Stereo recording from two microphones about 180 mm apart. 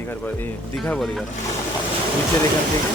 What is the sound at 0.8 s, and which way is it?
Speech, centre (ahead or behind).